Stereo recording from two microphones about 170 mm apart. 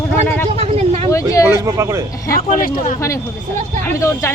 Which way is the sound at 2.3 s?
55° left (ahead or behind).